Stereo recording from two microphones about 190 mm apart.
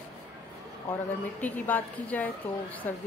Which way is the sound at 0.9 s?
10° left (ahead or behind).